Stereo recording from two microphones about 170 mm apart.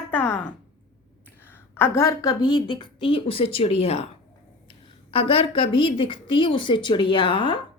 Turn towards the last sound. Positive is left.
turn(degrees=30)  # may be behind; listen again after turning